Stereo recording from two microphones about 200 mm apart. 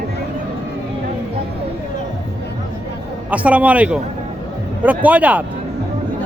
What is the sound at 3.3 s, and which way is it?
Speech, 5° right (ahead or behind).